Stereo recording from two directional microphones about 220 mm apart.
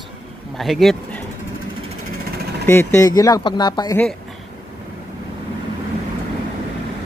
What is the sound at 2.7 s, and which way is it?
Speech, 10° left (ahead or behind).